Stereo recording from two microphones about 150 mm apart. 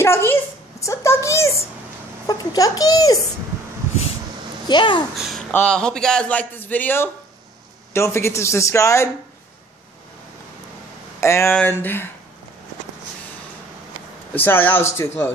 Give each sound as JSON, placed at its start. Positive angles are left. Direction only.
{"t": 0.0, "sound": "a woman's voice", "side_deg": 15}
{"t": 4.6, "sound": "a child's voice", "side_deg": 30}
{"t": 5.1, "sound": "speech", "side_deg": 0}
{"t": 5.5, "sound": "a man's voice", "side_deg": 10}
{"t": 11.1, "sound": "speech", "side_deg": 15}
{"t": 14.3, "sound": "speech", "side_deg": 10}